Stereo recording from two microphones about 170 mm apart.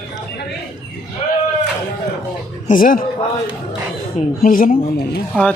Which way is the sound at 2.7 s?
55° left (ahead or behind).